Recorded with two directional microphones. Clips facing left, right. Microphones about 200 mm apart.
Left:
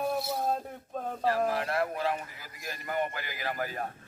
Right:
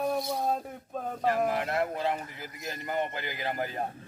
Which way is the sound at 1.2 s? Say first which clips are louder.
Right 1 dB; 20° right (ahead or behind).